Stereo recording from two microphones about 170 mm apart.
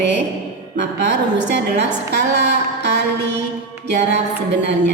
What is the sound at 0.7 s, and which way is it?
A woman's voice, 90° right.